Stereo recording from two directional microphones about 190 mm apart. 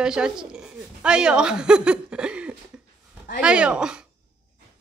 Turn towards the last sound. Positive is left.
turn(degrees=-5)  # may be behind; listen again after turning